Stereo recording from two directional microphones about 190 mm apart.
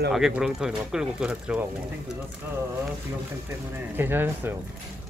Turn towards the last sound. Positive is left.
turn(degrees=-10)  # may be behind; listen again after turning